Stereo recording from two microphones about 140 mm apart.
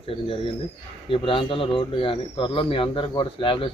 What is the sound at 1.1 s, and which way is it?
Speech, 40° left (ahead or behind).